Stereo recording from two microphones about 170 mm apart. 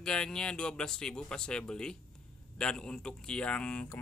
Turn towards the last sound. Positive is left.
turn(degrees=10)  # may be behind; listen again after turning